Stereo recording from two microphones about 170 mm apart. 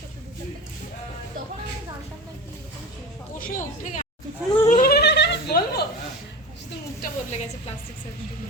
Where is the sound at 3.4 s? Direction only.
50° left (ahead or behind); by 5.8 s 75° left (ahead or behind).